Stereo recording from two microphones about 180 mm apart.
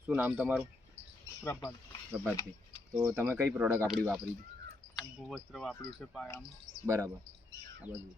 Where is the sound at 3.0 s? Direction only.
15° right (ahead or behind); by 5.7 s 5° left (ahead or behind).